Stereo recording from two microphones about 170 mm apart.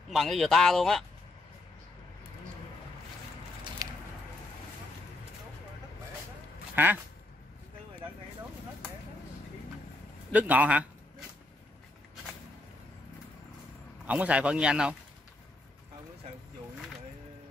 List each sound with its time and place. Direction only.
0.1 s speech: centre (ahead or behind)
3.8 s a sound: 20° right (ahead or behind)
6.7 s quack: 10° right (ahead or behind)
10.3 s speech: 10° right (ahead or behind)
14.0 s speech: 5° right (ahead or behind)